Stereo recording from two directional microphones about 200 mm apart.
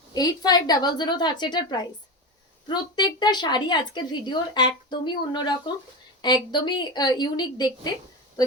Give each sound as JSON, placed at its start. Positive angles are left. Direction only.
{"t": 0.1, "sound": "a woman's voice", "side_deg": 20}